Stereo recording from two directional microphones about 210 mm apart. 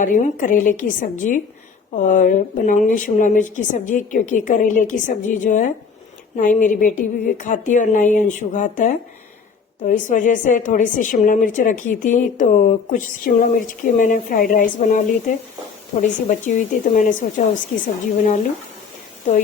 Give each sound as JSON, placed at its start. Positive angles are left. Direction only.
{"t": 0.0, "sound": "a woman's voice", "side_deg": 40}